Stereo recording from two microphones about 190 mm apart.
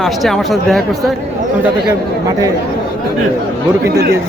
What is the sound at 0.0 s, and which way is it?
Speech, centre (ahead or behind).